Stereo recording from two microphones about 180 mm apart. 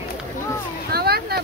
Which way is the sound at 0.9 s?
60° right (ahead or behind).